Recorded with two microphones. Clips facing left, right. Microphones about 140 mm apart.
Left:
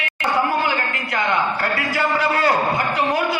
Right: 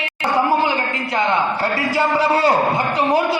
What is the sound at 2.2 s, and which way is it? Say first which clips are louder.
A man's voice: right 3 dB; 30° right (ahead or behind).